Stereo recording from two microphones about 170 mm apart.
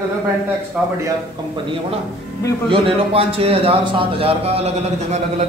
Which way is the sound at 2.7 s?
35° right (ahead or behind).